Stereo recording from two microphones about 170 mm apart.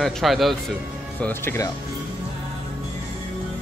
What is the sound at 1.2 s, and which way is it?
Speech, 15° left (ahead or behind).